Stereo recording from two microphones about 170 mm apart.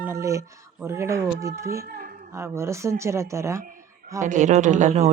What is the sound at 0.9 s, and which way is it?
Speech, 15° right (ahead or behind).